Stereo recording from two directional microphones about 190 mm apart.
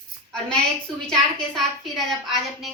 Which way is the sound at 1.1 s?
Centre (ahead or behind).